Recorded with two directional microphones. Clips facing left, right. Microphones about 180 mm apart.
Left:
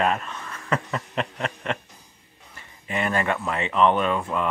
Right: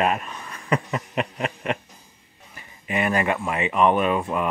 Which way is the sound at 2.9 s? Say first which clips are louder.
Right 2 dB; 15° right (ahead or behind).